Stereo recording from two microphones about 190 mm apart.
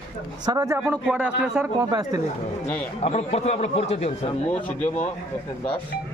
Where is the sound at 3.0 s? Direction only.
35° left (ahead or behind).